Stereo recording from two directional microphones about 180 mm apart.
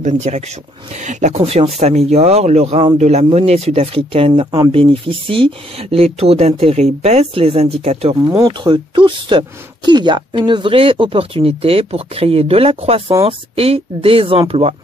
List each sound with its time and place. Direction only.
0.0 s speech: 40° right (ahead or behind)
8.3 s speech: 20° right (ahead or behind)